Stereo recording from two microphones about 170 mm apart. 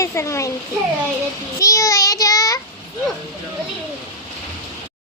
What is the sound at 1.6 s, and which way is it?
Speech, 20° left (ahead or behind).